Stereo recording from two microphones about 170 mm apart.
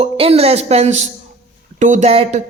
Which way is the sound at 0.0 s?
35° right (ahead or behind).